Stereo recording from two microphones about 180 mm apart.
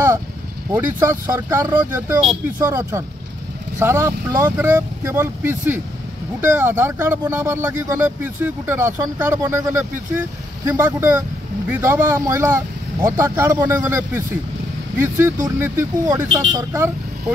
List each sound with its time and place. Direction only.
0.7 s speech: 10° right (ahead or behind)